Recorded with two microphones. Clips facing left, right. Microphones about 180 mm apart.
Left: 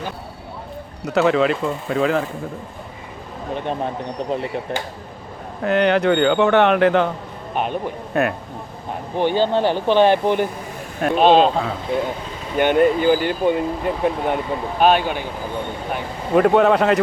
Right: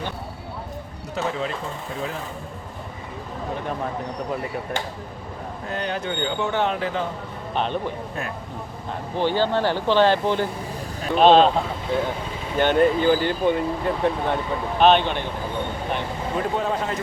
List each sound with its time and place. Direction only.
1.0 s speech: 75° left (ahead or behind)
3.5 s speech: 25° left (ahead or behind)
5.6 s speech: 75° left (ahead or behind)
7.5 s a man's voice: 10° left (ahead or behind)
8.1 s speech: 70° left (ahead or behind)
8.9 s speech: 15° left (ahead or behind)
12.5 s speech: 10° left (ahead or behind)
16.3 s speech: 70° left (ahead or behind)